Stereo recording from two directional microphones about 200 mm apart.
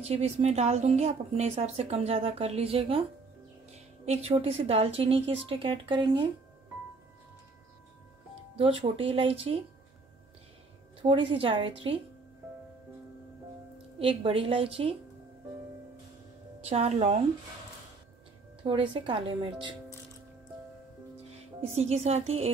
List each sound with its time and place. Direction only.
0.0 s a woman's voice: 30° right (ahead or behind)
8.5 s a woman's voice: 25° right (ahead or behind)
11.0 s a woman's voice: 25° right (ahead or behind)
13.9 s a woman's voice: 25° right (ahead or behind)
16.6 s a woman's voice: 30° right (ahead or behind)
18.6 s a woman's voice: 25° right (ahead or behind)
21.5 s a woman's voice: 30° right (ahead or behind)